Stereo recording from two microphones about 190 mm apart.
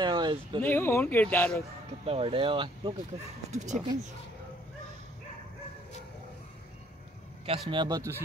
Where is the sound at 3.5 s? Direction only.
35° right (ahead or behind).